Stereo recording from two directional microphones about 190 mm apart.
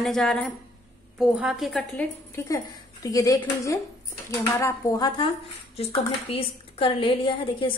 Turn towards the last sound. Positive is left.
turn(degrees=25)  # may be behind; listen again after turning